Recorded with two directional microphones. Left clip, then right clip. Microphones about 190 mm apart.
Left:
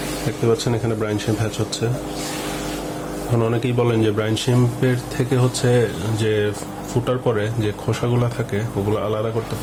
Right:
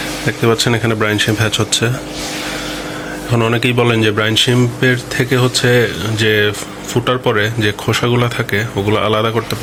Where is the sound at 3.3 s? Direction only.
Centre (ahead or behind).